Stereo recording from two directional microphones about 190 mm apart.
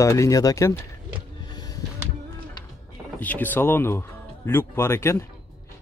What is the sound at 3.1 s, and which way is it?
Speech, 10° left (ahead or behind).